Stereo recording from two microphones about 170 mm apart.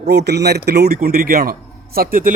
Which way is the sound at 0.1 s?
80° right.